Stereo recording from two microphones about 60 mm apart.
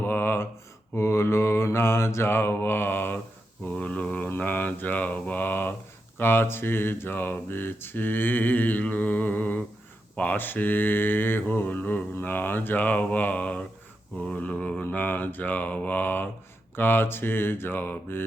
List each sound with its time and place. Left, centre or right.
0.0 s a sound: left
0.9 s mantra: left
3.8 s speech: left